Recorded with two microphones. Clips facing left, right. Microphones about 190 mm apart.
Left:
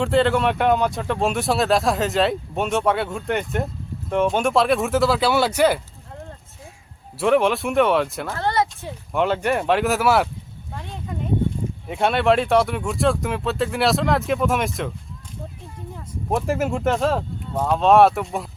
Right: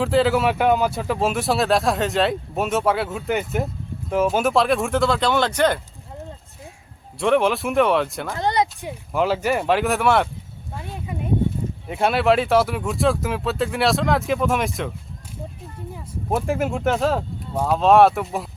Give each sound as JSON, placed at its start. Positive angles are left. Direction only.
{"t": 0.0, "sound": "speech", "side_deg": 0}
{"t": 7.2, "sound": "speech", "side_deg": 0}
{"t": 8.3, "sound": "speech", "side_deg": -15}
{"t": 9.1, "sound": "speech", "side_deg": 0}
{"t": 10.8, "sound": "a sound", "side_deg": -5}
{"t": 11.9, "sound": "speech", "side_deg": 0}
{"t": 16.3, "sound": "speech", "side_deg": 0}